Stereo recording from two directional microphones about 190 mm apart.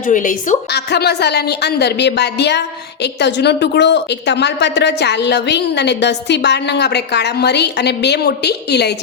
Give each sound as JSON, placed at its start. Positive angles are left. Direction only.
{"t": 0.0, "sound": "a woman's voice", "side_deg": 45}
{"t": 0.7, "sound": "a woman's voice", "side_deg": 60}